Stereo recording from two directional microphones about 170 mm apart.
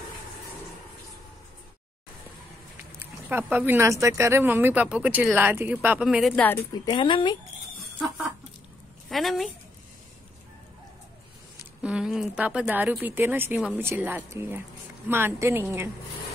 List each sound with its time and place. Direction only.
3.0 s speech: 10° right (ahead or behind)
6.7 s a woman's voice: 25° left (ahead or behind)
9.1 s a woman's voice: centre (ahead or behind)
11.8 s speech: 5° right (ahead or behind)